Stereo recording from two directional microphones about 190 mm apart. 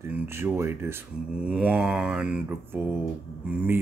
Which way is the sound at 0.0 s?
10° right (ahead or behind).